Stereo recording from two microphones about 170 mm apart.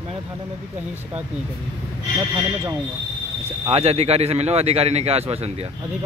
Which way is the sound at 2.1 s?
20° right (ahead or behind).